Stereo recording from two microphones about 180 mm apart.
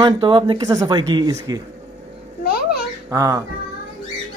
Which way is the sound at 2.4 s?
60° left (ahead or behind).